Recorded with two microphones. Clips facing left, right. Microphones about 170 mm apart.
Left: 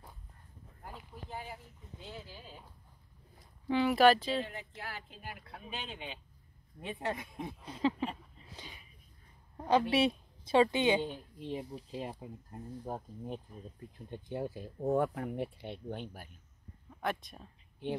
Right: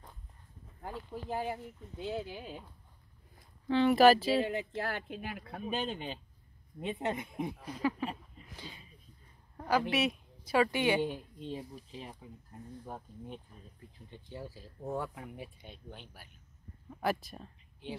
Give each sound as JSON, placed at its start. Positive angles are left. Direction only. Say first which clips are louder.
{"t": 1.1, "sound": "speech", "louder": "right 9 dB", "side_deg": -75}
{"t": 3.6, "sound": "speech", "louder": "right 2 dB", "side_deg": 10}
{"t": 4.5, "sound": "speech", "louder": "right 10 dB", "side_deg": -75}
{"t": 6.8, "sound": "speech", "louder": "right 3 dB", "side_deg": -20}
{"t": 7.6, "sound": "a woman's voice", "louder": "left 3 dB", "side_deg": 25}
{"t": 8.5, "sound": "a sound", "louder": "right 2 dB", "side_deg": 20}
{"t": 9.7, "sound": "a woman's voice", "louder": "left 2 dB", "side_deg": 30}
{"t": 11.0, "sound": "a woman's voice", "louder": "right 4 dB", "side_deg": -10}
{"t": 11.9, "sound": "speech", "louder": "left 6 dB", "side_deg": 40}
{"t": 13.9, "sound": "speech", "louder": "left 7 dB", "side_deg": 55}
{"t": 17.0, "sound": "speech", "louder": "right 3 dB", "side_deg": -5}